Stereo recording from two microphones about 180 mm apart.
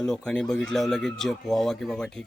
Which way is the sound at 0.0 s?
5° left (ahead or behind).